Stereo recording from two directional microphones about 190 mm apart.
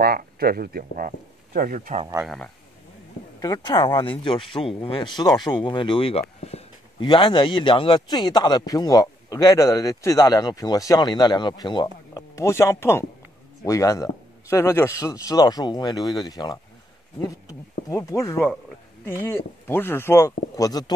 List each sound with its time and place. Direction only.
0.0 s speech: 55° right (ahead or behind)
2.2 s a man's voice: 5° left (ahead or behind)
3.3 s a man's voice: 20° left (ahead or behind)